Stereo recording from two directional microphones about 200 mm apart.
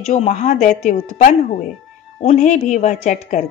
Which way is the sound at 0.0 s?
35° left (ahead or behind).